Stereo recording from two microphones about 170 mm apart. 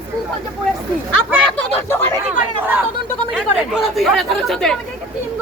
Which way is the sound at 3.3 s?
Centre (ahead or behind).